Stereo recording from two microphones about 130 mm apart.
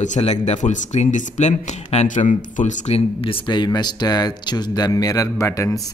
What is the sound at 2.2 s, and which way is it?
Speech, 80° left.